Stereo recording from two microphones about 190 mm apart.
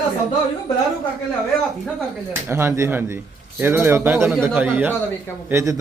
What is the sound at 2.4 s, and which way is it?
A man's voice, 15° right (ahead or behind).